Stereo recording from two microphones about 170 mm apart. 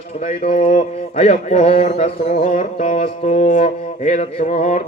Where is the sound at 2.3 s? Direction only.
35° left (ahead or behind).